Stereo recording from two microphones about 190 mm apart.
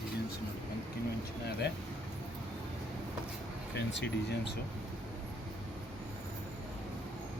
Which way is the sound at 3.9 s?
65° left (ahead or behind).